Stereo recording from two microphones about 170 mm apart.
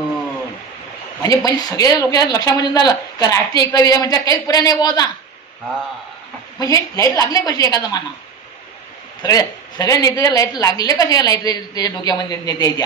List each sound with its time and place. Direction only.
1.2 s speech: 20° left (ahead or behind)
6.6 s speech: 20° left (ahead or behind)
9.2 s speech: 20° left (ahead or behind)